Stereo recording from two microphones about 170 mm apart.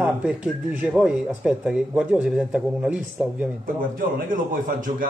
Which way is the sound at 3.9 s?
50° right (ahead or behind).